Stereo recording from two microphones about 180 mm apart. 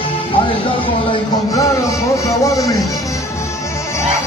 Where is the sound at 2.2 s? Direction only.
20° left (ahead or behind).